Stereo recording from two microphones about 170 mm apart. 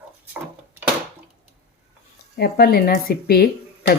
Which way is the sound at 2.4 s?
70° left (ahead or behind).